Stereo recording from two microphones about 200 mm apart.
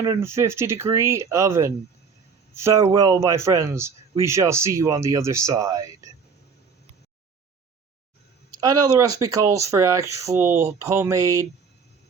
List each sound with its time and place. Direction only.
0.0 s speech: 15° right (ahead or behind)
8.4 s speech: 20° right (ahead or behind)